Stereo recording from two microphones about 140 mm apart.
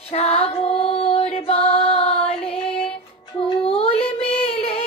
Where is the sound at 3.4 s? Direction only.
40° left (ahead or behind).